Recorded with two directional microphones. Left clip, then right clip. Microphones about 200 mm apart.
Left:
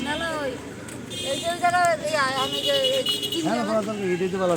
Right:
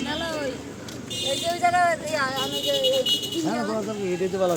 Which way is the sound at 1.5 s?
Centre (ahead or behind).